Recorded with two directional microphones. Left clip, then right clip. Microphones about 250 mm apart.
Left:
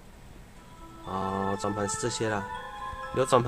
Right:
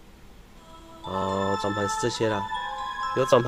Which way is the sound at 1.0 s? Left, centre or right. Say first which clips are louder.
Right 4 dB; centre.